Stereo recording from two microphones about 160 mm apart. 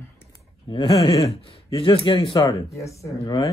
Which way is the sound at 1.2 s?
35° left (ahead or behind).